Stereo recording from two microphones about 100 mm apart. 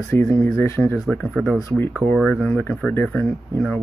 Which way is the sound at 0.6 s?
25° left (ahead or behind).